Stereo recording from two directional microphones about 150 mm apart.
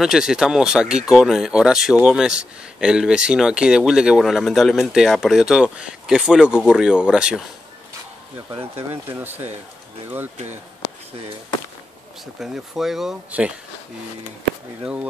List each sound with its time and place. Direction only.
0.0 s speech: 5° right (ahead or behind)
10.3 s speech: 50° right (ahead or behind)
12.4 s speech: centre (ahead or behind)